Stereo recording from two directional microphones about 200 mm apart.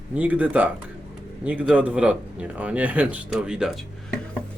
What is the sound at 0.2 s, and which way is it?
Speech, 5° right (ahead or behind).